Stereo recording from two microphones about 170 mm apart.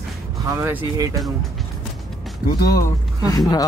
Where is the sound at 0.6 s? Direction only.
15° right (ahead or behind).